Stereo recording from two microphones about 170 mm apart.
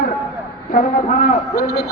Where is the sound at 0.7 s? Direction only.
50° left (ahead or behind).